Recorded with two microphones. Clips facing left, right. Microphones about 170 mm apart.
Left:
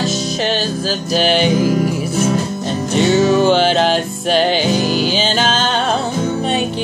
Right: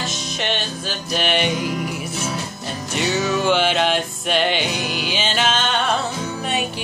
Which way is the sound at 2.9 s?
30° left (ahead or behind).